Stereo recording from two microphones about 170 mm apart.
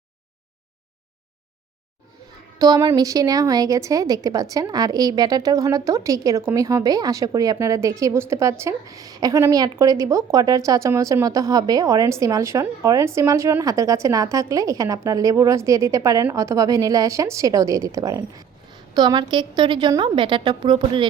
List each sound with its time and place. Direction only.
2.6 s a woman's voice: 20° right (ahead or behind)